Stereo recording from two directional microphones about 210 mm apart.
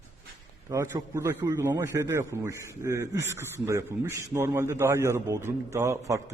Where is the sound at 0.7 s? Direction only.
15° right (ahead or behind).